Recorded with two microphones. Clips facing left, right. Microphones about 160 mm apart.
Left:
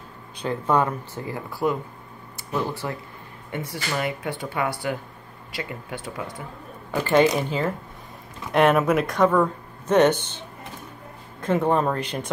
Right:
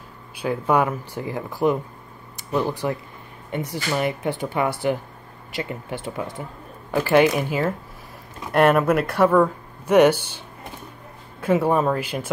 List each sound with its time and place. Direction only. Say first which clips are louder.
0.4 s speech: right 2 dB; 10° right (ahead or behind); by 6.2 s 25° right (ahead or behind)
7.3 s speech: right 2 dB; 10° right (ahead or behind)
11.4 s speech: right 2 dB; 10° right (ahead or behind)